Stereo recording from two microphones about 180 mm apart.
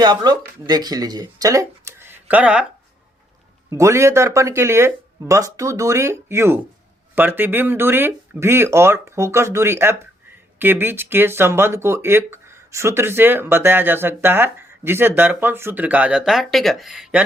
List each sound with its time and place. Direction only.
0.0 s speech: 25° right (ahead or behind); by 2.6 s 5° right (ahead or behind)
3.7 s speech: 15° right (ahead or behind)